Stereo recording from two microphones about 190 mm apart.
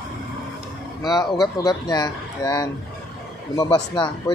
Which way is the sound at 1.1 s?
20° left (ahead or behind).